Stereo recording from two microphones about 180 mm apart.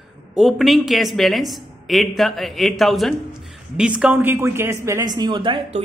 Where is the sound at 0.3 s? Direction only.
Centre (ahead or behind).